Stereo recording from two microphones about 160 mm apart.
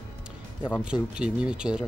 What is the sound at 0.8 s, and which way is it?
Speech, 5° right (ahead or behind).